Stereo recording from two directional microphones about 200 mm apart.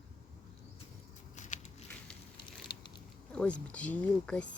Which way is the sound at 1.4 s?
35° left (ahead or behind).